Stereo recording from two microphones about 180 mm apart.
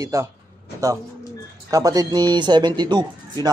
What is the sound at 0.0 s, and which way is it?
Speech, 15° right (ahead or behind).